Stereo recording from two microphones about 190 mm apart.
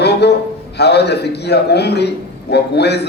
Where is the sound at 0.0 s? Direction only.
60° left (ahead or behind).